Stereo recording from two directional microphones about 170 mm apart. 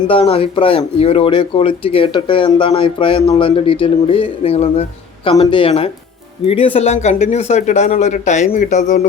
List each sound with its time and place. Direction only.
0.1 s speech: 35° left (ahead or behind)